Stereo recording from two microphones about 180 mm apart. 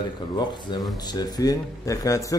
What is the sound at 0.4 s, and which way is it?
Speech, 25° left (ahead or behind).